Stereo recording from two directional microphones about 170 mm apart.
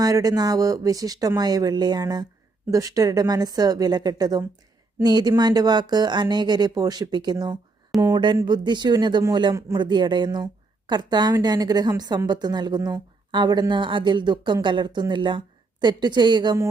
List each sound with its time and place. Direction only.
0.0 s speech: 20° right (ahead or behind)